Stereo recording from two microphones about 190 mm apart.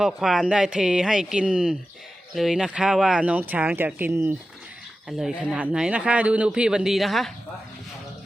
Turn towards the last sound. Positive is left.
turn(degrees=0)  # may be behind; listen again after turning